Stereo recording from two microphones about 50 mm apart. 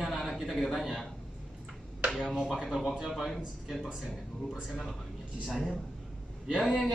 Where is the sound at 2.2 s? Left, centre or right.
Centre.